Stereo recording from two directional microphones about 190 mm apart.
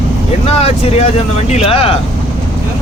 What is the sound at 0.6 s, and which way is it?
Speech, 30° left (ahead or behind).